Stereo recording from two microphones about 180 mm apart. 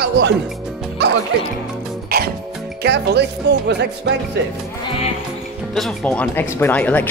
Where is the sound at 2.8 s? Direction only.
70° right (ahead or behind).